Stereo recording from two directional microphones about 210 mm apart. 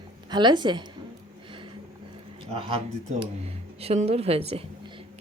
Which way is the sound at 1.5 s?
25° right (ahead or behind).